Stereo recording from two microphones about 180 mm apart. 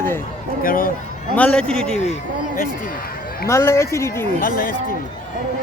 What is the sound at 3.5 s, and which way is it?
Speech, 15° left (ahead or behind).